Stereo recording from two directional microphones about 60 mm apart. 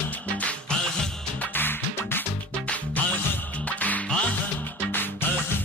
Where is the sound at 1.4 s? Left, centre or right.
Left.